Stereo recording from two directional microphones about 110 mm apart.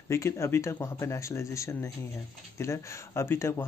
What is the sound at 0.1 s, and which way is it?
Speech, 25° left (ahead or behind).